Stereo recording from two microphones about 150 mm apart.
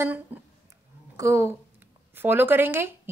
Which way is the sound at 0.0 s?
10° right (ahead or behind).